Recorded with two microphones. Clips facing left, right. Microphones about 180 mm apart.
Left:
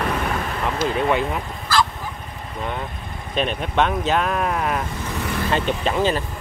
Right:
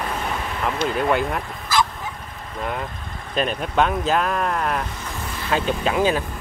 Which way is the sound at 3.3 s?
Centre (ahead or behind).